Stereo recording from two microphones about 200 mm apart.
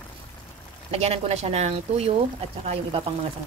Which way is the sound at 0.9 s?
30° right (ahead or behind).